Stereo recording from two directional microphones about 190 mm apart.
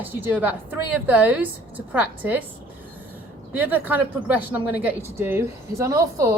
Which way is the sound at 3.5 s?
10° right (ahead or behind).